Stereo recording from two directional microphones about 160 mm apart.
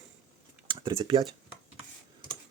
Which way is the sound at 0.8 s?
30° right (ahead or behind).